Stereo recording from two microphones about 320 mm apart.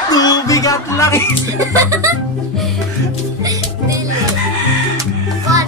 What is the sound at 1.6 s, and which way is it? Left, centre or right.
Music, centre.